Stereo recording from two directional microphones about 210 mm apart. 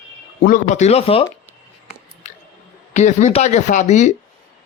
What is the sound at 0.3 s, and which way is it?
Speech, 45° left (ahead or behind).